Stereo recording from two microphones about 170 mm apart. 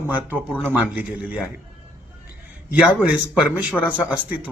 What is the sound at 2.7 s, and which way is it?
Speech, 5° right (ahead or behind).